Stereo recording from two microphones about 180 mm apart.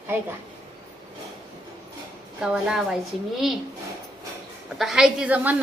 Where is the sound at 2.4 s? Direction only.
Centre (ahead or behind).